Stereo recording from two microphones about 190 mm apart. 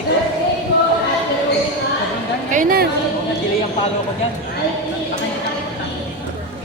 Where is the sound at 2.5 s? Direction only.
45° right (ahead or behind).